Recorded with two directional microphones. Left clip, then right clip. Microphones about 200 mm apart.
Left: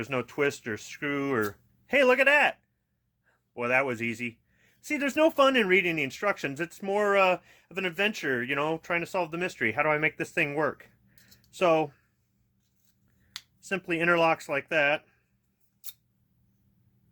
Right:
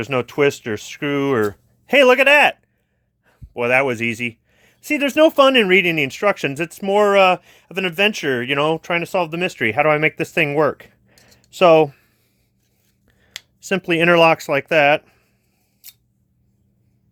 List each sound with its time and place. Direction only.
0.0 s speech: 40° right (ahead or behind)
13.6 s speech: 40° right (ahead or behind)